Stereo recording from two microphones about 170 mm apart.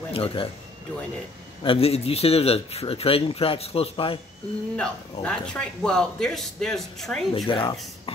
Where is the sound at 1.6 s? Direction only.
35° left (ahead or behind).